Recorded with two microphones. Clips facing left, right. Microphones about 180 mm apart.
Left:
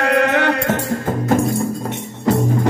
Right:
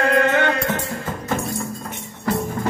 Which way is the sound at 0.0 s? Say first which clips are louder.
Left 2 dB; 70° left (ahead or behind).